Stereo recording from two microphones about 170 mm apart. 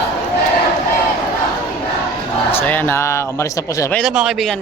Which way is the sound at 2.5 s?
10° left (ahead or behind).